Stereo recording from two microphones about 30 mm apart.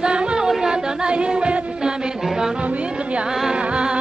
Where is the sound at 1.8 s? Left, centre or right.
Right.